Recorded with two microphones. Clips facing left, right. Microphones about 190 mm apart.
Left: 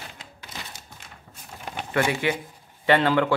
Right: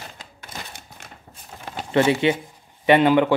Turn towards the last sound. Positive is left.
turn(degrees=-20)  # may be behind; listen again after turning